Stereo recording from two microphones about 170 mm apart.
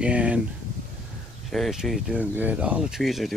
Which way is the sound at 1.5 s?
Centre (ahead or behind).